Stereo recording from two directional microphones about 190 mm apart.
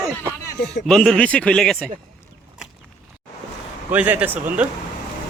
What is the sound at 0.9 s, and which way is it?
Speech, centre (ahead or behind).